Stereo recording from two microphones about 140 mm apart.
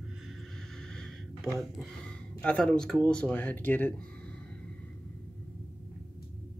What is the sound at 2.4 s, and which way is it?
Speech, 5° left (ahead or behind).